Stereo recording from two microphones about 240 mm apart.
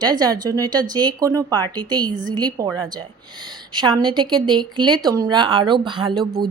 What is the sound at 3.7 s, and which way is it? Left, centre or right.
Speech, centre.